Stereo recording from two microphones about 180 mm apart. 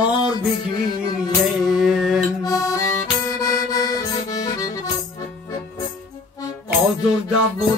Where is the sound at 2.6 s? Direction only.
20° left (ahead or behind).